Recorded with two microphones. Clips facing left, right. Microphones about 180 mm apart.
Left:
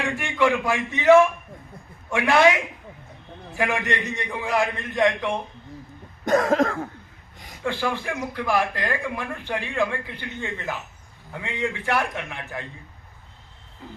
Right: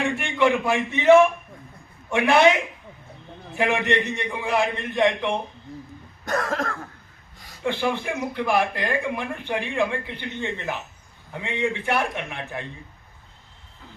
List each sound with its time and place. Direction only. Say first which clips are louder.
0.2 s speech: left 1 dB; 20° right (ahead or behind)
6.2 s cough: left 7 dB; 15° left (ahead or behind)
7.6 s speech: right 2 dB; 20° right (ahead or behind)